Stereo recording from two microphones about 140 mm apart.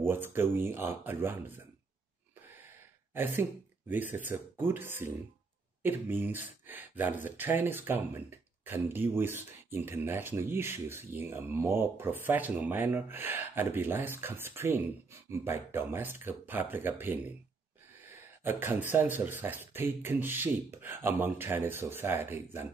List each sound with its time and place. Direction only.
0.0 s speech: 15° right (ahead or behind)
4.1 s speech: 15° right (ahead or behind)